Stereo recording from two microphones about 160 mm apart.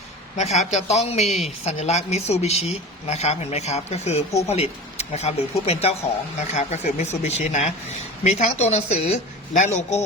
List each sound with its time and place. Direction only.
0.3 s speech: 45° left (ahead or behind)